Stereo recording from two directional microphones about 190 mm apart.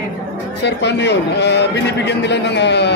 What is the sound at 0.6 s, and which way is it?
A man's voice, 65° left (ahead or behind).